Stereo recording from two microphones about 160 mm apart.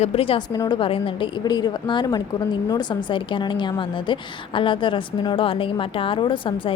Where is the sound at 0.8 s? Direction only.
35° left (ahead or behind).